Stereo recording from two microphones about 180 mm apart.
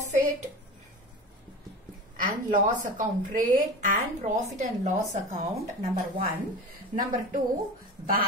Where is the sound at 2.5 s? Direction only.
45° right (ahead or behind).